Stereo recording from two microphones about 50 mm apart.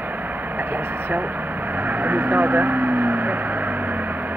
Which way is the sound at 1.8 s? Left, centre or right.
Right.